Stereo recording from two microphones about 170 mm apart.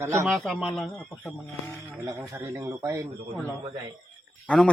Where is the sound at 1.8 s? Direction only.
15° right (ahead or behind).